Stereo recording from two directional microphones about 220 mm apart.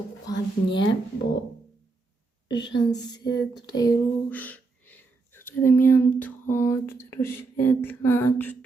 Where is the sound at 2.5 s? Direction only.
20° left (ahead or behind).